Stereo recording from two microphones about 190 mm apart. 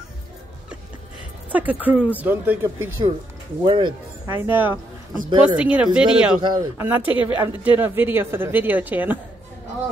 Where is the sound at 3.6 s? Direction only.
25° right (ahead or behind).